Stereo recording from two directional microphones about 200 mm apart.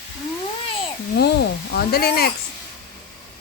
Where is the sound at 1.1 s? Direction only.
55° left (ahead or behind).